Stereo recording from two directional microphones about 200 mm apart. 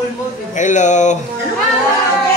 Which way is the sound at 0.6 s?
40° left (ahead or behind).